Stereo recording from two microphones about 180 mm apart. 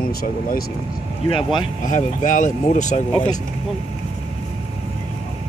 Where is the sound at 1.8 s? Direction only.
45° left (ahead or behind).